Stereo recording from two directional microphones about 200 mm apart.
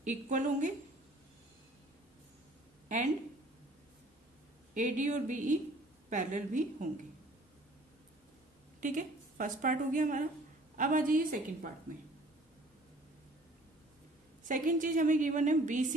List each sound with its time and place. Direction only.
0.0 s a woman's voice: 40° right (ahead or behind)
4.7 s a woman's voice: 40° right (ahead or behind)
8.8 s a woman's voice: 40° right (ahead or behind)
14.5 s a woman's voice: 40° right (ahead or behind)